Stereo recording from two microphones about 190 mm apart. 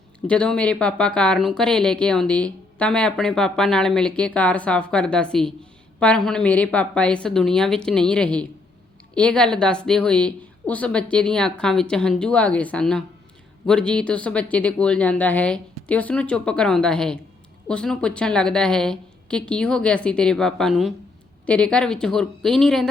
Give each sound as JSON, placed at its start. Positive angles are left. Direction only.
{"t": 0.3, "sound": "speech", "side_deg": 5}